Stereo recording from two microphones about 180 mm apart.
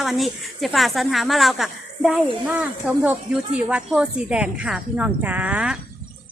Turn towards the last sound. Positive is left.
turn(degrees=-5)  # may be behind; listen again after turning